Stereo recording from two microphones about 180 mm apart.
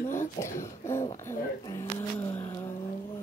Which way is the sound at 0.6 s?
15° left (ahead or behind).